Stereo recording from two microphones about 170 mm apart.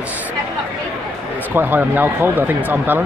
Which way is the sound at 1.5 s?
10° right (ahead or behind).